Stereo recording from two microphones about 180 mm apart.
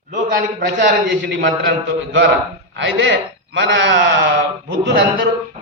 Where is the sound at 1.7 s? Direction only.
80° right.